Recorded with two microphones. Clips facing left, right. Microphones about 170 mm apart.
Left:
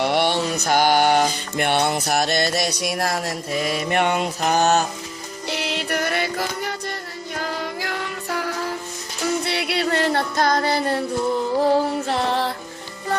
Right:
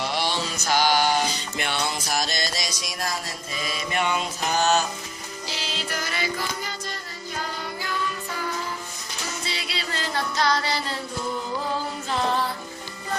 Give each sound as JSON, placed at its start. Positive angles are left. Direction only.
{"t": 0.0, "sound": "mantra", "side_deg": 60}
{"t": 5.5, "sound": "music", "side_deg": 60}
{"t": 7.3, "sound": "music", "side_deg": 80}
{"t": 11.6, "sound": "music", "side_deg": 65}